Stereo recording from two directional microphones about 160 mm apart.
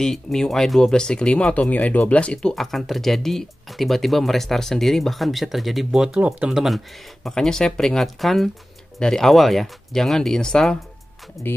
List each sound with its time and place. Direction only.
0.0 s speech: 5° left (ahead or behind)